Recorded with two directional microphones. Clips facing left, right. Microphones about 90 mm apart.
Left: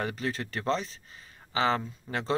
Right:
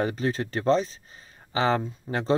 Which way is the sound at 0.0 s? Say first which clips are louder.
Right 6 dB; 35° right (ahead or behind).